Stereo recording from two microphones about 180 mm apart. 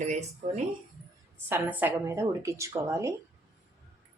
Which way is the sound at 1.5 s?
10° right (ahead or behind).